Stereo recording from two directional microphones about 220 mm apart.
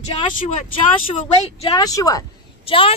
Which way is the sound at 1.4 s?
20° left (ahead or behind).